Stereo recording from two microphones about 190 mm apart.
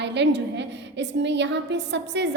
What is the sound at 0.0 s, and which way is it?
A woman's voice, 65° right (ahead or behind).